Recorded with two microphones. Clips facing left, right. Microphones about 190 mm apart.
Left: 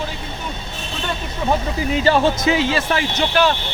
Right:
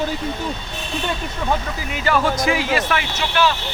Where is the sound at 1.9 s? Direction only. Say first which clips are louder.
Left 3 dB; 30° left (ahead or behind).